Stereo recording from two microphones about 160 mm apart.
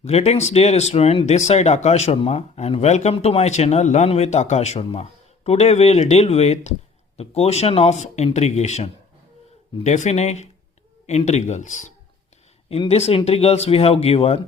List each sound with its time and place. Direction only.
0.0 s speech: 40° left (ahead or behind)
12.6 s speech: 35° left (ahead or behind)